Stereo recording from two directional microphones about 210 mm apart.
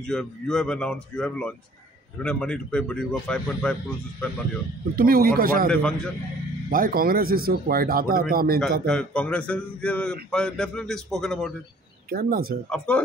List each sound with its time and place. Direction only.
0.0 s speech: centre (ahead or behind)
4.9 s speech: 45° right (ahead or behind)
5.7 s speech: 5° left (ahead or behind)
6.7 s speech: 45° right (ahead or behind)
8.8 s speech: 5° left (ahead or behind)
12.1 s speech: 45° right (ahead or behind)
12.6 s speech: 5° left (ahead or behind)